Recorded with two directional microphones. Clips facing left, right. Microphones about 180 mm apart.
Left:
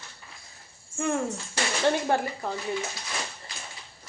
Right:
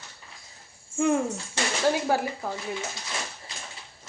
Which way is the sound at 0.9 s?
15° right (ahead or behind).